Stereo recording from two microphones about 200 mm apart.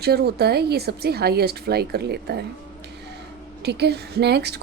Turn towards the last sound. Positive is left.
turn(degrees=-55)  # may be behind; listen again after turning